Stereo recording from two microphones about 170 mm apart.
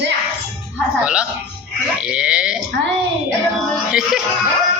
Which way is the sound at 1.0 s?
5° right (ahead or behind).